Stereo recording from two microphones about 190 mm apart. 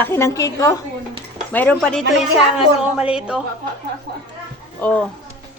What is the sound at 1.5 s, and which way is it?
Speech, 5° left (ahead or behind).